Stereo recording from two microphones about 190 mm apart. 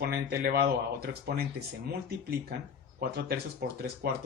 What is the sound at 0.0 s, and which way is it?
Speech, 60° right (ahead or behind).